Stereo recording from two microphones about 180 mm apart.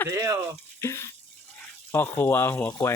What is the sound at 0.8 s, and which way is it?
Speech, 15° left (ahead or behind).